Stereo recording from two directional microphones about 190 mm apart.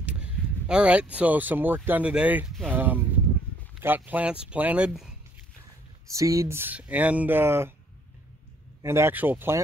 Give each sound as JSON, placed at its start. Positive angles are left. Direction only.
{"t": 0.0, "sound": "speech", "side_deg": -5}
{"t": 6.0, "sound": "speech", "side_deg": -15}
{"t": 8.8, "sound": "speech", "side_deg": -15}